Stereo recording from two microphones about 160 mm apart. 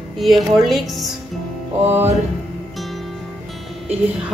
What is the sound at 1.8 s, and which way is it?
Speech, 15° right (ahead or behind).